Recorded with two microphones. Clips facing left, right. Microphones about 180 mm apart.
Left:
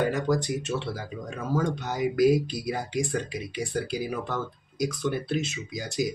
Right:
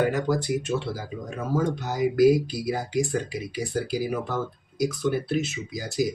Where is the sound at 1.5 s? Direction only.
Centre (ahead or behind).